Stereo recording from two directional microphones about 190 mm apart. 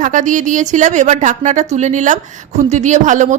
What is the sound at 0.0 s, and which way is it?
A woman's voice, 40° right (ahead or behind).